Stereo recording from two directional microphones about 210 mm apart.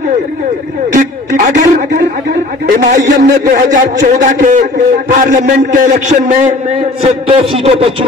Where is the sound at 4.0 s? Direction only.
35° right (ahead or behind).